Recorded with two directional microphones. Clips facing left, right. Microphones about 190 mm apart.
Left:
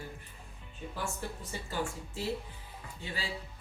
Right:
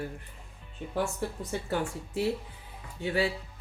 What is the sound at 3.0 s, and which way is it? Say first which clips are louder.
Speech: right 13 dB; 70° right (ahead or behind).